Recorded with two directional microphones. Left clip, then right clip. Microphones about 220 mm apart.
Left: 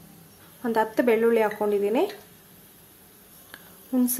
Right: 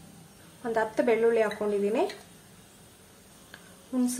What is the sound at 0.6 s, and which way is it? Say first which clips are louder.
A woman's voice: left 4 dB; 30° left (ahead or behind).